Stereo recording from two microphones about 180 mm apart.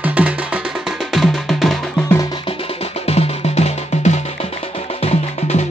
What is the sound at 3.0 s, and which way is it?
Music, 35° left (ahead or behind).